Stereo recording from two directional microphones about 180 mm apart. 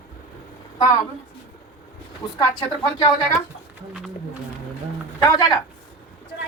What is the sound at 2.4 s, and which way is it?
A woman's voice, 25° left (ahead or behind).